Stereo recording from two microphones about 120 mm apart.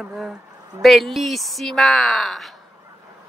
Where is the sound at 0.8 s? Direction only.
Centre (ahead or behind).